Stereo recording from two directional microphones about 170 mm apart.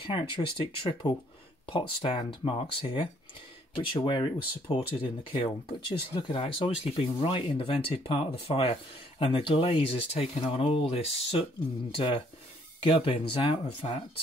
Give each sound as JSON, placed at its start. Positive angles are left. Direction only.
{"t": 0.0, "sound": "speech", "side_deg": 30}